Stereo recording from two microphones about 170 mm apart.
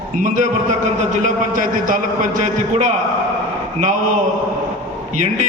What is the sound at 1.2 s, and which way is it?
A man's voice, 50° right (ahead or behind).